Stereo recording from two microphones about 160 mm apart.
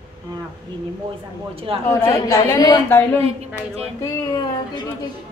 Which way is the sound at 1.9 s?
20° left (ahead or behind).